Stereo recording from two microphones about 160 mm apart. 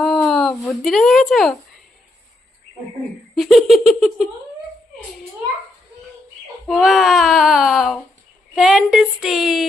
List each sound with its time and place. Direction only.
0.0 s a sound: centre (ahead or behind)
3.3 s speech: centre (ahead or behind)
6.7 s speech: centre (ahead or behind)